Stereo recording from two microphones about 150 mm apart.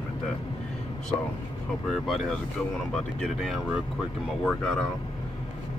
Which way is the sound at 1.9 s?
Centre (ahead or behind).